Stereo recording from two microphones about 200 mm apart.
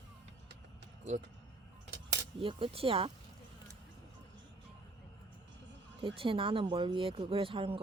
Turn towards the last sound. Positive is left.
turn(degrees=-25)  # may be behind; listen again after turning